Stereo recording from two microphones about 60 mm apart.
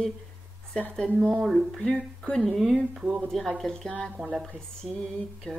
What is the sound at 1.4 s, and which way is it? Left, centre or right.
Speech, centre.